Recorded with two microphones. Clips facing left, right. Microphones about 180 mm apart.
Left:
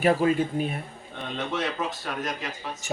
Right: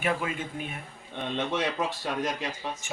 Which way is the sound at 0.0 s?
35° left (ahead or behind).